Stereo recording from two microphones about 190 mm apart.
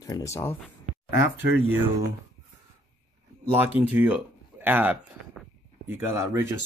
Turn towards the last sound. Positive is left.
turn(degrees=-10)  # may be behind; listen again after turning